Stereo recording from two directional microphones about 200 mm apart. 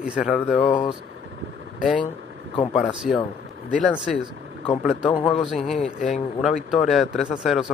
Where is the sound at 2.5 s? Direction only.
30° left (ahead or behind).